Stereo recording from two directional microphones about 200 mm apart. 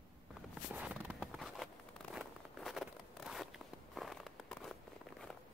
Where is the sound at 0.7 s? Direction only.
5° right (ahead or behind).